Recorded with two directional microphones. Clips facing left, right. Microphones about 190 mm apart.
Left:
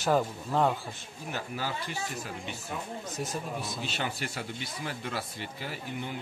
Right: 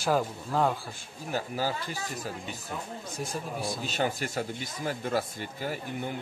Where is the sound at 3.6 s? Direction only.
45° right (ahead or behind).